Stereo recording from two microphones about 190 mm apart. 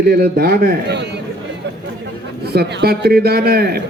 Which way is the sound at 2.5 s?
60° right (ahead or behind).